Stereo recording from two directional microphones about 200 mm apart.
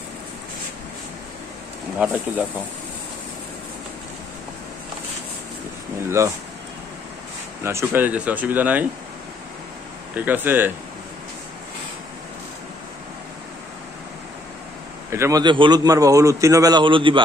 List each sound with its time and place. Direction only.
2.0 s a man's voice: 5° right (ahead or behind)
6.0 s speech: 15° right (ahead or behind)
7.6 s a man's voice: 10° right (ahead or behind)
10.1 s a man's voice: 10° right (ahead or behind)
15.0 s a man's voice: 15° right (ahead or behind)